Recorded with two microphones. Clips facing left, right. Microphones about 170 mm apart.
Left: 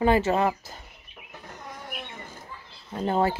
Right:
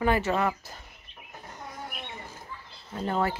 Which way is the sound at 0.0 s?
25° left (ahead or behind).